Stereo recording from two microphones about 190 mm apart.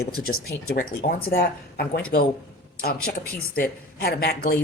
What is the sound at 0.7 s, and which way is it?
A woman's voice, 50° left (ahead or behind).